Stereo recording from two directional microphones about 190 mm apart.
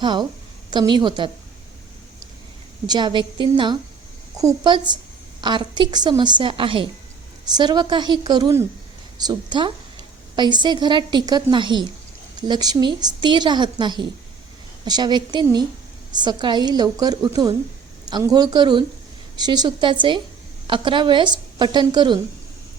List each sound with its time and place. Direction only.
0.0 s a woman's voice: 25° right (ahead or behind)
2.8 s a woman's voice: 20° right (ahead or behind)